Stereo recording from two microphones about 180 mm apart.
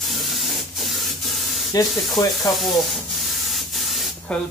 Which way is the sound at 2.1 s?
20° left (ahead or behind).